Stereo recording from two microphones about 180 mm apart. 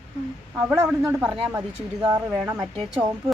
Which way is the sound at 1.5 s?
5° right (ahead or behind).